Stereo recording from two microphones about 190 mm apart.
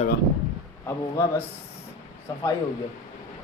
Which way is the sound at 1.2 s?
15° left (ahead or behind).